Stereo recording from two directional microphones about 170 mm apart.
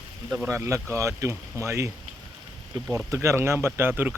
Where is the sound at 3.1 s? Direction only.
15° right (ahead or behind).